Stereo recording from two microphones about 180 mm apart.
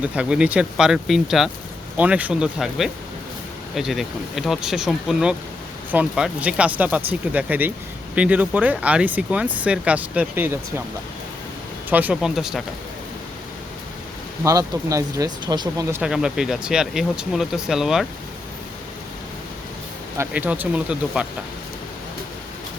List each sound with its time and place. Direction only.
0.0 s speech: 5° right (ahead or behind)
11.9 s speech: 10° right (ahead or behind)
14.4 s speech: 20° right (ahead or behind)
15.9 s speech: 5° right (ahead or behind)
20.1 s speech: 10° right (ahead or behind)